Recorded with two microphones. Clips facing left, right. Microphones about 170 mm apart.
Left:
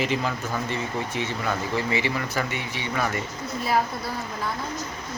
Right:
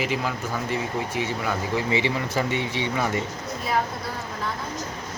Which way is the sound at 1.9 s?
25° right (ahead or behind).